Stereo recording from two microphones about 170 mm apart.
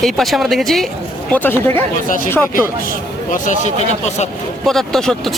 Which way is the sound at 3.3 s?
45° left (ahead or behind).